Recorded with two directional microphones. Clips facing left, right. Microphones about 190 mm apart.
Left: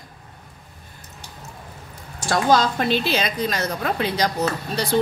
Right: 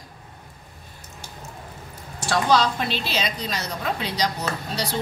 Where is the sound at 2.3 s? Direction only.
45° left (ahead or behind).